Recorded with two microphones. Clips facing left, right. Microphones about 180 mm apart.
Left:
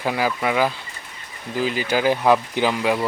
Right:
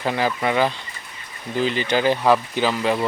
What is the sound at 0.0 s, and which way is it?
Speech, 5° left (ahead or behind).